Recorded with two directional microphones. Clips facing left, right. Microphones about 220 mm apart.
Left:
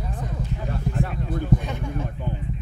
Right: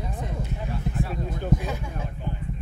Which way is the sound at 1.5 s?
45° right (ahead or behind).